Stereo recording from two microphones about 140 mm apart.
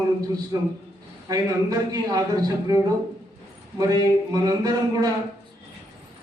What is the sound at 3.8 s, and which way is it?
A man's voice, 25° right (ahead or behind).